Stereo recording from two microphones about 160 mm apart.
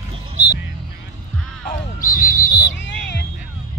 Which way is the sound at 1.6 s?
60° left (ahead or behind).